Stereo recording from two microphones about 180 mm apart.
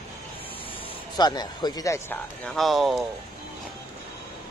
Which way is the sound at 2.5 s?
Centre (ahead or behind).